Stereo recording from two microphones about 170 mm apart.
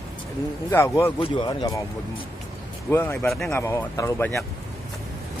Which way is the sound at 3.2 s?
Centre (ahead or behind).